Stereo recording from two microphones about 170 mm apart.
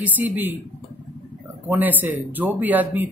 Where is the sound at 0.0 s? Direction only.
10° right (ahead or behind).